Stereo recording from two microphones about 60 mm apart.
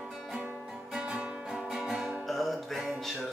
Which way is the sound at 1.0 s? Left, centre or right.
Centre.